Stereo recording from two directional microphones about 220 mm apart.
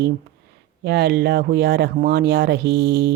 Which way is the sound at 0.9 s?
45° right (ahead or behind).